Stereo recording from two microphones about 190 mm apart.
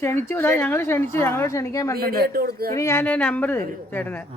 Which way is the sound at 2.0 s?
55° right (ahead or behind).